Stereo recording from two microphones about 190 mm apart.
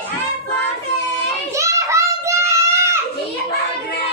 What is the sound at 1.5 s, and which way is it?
Children playing, 15° right (ahead or behind).